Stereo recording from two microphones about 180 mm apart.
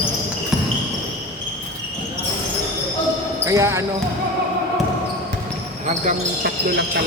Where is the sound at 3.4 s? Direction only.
15° right (ahead or behind).